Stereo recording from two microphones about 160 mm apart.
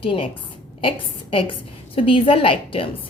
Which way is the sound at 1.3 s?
35° left (ahead or behind).